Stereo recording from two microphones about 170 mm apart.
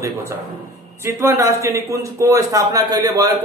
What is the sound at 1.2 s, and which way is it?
A man's voice, 15° right (ahead or behind).